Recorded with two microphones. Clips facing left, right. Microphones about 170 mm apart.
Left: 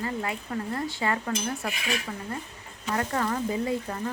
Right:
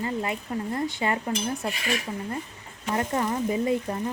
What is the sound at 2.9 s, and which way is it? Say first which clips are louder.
Speech: right 2 dB; 20° right (ahead or behind).